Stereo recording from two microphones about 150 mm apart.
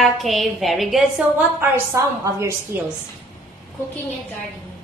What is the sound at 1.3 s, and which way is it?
A woman's voice, 15° right (ahead or behind).